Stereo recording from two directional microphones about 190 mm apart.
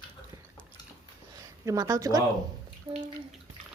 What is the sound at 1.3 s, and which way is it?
Speech, 20° right (ahead or behind).